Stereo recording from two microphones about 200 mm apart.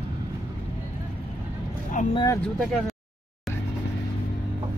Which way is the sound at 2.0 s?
40° left (ahead or behind).